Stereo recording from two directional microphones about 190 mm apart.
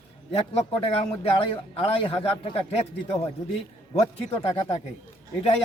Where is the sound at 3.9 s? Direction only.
30° left (ahead or behind).